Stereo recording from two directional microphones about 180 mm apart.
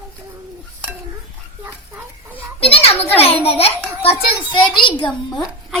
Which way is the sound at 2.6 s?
35° left (ahead or behind).